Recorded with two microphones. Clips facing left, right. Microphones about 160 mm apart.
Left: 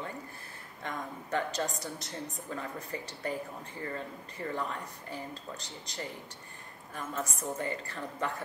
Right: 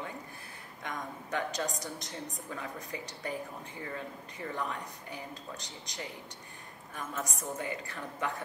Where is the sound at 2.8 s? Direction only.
10° right (ahead or behind).